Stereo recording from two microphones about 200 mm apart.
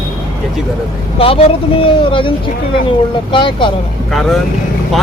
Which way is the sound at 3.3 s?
25° left (ahead or behind).